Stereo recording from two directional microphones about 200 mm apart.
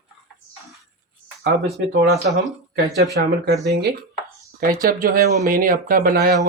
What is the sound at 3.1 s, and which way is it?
Speech, 50° right (ahead or behind).